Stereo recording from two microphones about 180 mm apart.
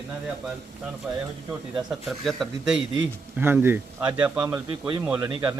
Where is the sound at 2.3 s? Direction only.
Centre (ahead or behind).